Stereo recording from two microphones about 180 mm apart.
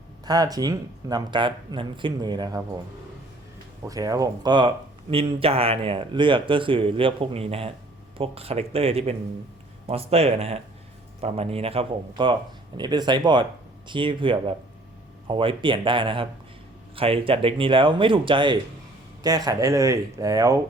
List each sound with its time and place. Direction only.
0.3 s speech: 20° right (ahead or behind)
3.8 s speech: 20° right (ahead or behind)